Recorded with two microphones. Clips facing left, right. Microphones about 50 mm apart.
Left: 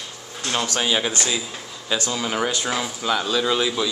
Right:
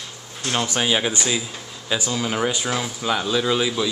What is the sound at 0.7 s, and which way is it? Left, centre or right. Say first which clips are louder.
A man's voice: right 1 dB; centre.